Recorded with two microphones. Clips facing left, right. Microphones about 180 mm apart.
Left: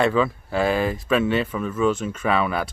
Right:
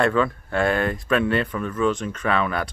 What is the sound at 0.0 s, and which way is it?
Speech, 5° left (ahead or behind).